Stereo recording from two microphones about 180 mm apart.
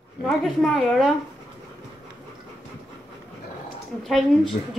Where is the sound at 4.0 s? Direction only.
Centre (ahead or behind).